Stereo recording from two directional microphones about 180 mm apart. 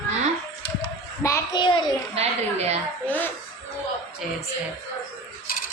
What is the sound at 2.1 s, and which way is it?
Speech, 35° right (ahead or behind).